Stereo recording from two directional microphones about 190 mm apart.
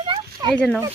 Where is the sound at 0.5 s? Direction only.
5° left (ahead or behind).